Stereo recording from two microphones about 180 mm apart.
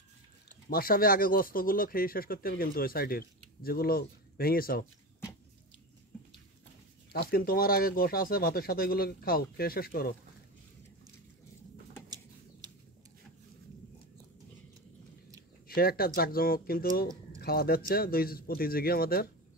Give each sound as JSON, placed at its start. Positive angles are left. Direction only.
{"t": 0.7, "sound": "speech", "side_deg": 55}
{"t": 7.1, "sound": "speech", "side_deg": 60}
{"t": 12.6, "sound": "a sound", "side_deg": -20}
{"t": 15.6, "sound": "speech", "side_deg": 55}